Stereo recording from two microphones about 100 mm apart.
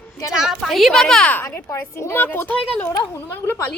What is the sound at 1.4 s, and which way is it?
A woman's voice, 30° left (ahead or behind).